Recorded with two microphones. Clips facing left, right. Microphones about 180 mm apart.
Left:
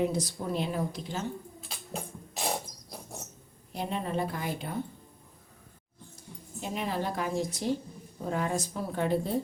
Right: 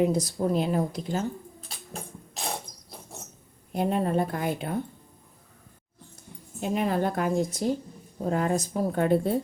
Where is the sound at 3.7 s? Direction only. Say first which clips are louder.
Right 7 dB; 50° right (ahead or behind).